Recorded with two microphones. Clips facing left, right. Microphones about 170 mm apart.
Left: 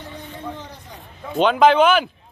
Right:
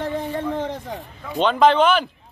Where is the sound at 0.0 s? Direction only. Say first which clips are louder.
Right 9 dB; 90° right.